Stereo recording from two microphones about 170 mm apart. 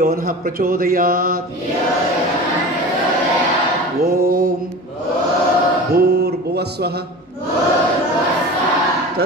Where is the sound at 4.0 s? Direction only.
60° right (ahead or behind).